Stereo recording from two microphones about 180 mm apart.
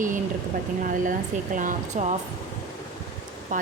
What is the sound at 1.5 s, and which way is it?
Speech, 45° right (ahead or behind).